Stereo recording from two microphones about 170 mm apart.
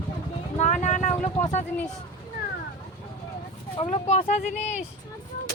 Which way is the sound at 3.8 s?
40° left (ahead or behind).